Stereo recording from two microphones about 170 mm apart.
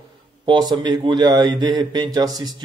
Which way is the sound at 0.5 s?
25° right (ahead or behind).